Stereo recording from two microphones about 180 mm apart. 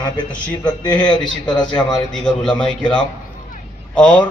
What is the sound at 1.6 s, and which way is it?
A man's voice, 5° left (ahead or behind).